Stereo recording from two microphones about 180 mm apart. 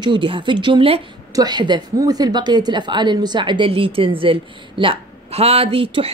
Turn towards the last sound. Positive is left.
turn(degrees=-30)  # may be behind; listen again after turning